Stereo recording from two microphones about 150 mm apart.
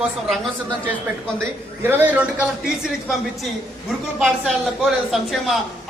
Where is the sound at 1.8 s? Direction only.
15° right (ahead or behind).